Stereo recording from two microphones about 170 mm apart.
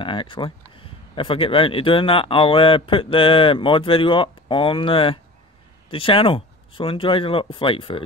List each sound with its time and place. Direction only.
0.0 s speech: 30° left (ahead or behind)